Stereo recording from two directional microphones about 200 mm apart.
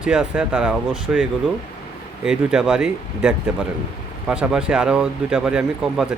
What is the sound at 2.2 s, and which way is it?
Speech, centre (ahead or behind).